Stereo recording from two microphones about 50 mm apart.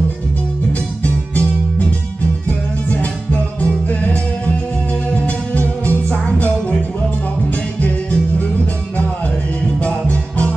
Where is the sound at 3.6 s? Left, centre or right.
Left.